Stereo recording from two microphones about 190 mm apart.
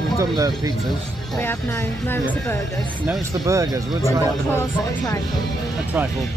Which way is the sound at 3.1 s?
15° right (ahead or behind).